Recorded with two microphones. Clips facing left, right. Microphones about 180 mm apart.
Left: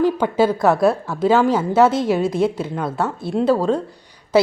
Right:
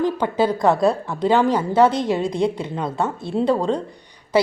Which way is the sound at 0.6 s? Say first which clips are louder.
Left 1 dB; 5° left (ahead or behind).